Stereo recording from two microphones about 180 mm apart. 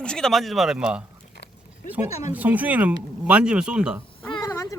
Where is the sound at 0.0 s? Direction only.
5° left (ahead or behind).